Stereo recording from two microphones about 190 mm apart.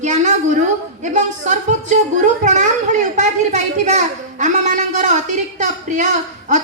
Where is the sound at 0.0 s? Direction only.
40° right (ahead or behind).